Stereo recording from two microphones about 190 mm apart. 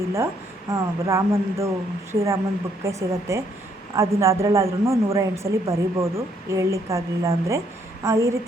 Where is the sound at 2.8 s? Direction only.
15° right (ahead or behind).